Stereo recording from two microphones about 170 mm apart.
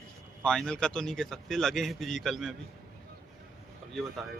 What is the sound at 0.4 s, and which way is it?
Speech, 5° left (ahead or behind).